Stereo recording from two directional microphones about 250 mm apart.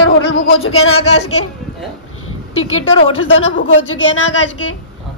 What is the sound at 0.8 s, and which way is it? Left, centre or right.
Speech, left.